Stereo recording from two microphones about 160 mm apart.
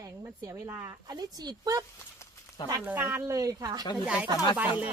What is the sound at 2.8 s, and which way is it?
Speech, 10° right (ahead or behind).